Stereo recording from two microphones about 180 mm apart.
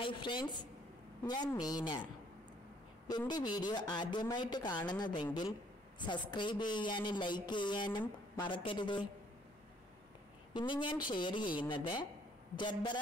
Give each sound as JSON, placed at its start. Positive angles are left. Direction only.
{"t": 0.0, "sound": "speech", "side_deg": 25}
{"t": 3.1, "sound": "speech", "side_deg": 25}
{"t": 10.5, "sound": "speech", "side_deg": 25}